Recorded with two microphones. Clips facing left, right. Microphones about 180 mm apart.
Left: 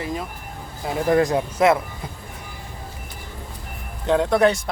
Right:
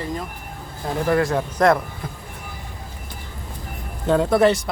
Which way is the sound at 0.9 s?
15° left (ahead or behind).